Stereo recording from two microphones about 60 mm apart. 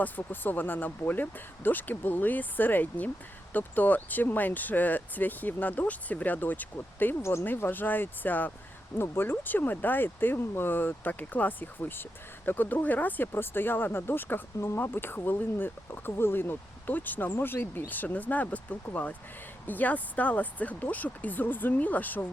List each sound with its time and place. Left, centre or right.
0.0 s speech: left
7.2 s speech: left
7.4 s speech: left